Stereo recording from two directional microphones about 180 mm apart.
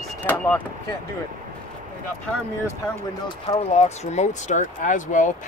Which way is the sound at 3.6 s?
40° left (ahead or behind).